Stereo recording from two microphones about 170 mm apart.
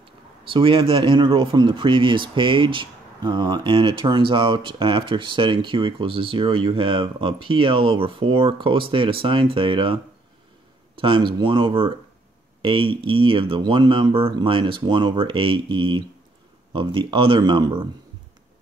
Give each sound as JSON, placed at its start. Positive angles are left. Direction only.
{"t": 0.5, "sound": "speech", "side_deg": -30}
{"t": 11.0, "sound": "speech", "side_deg": -30}